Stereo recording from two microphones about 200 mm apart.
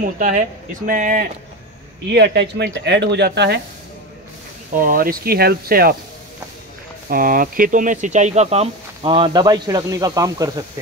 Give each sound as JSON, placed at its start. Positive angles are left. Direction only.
{"t": 0.0, "sound": "speech", "side_deg": -40}
{"t": 2.0, "sound": "speech", "side_deg": -55}
{"t": 4.7, "sound": "speech", "side_deg": -45}
{"t": 7.1, "sound": "speech", "side_deg": -45}